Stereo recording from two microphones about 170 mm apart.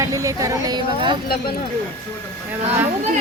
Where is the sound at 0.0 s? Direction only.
20° right (ahead or behind).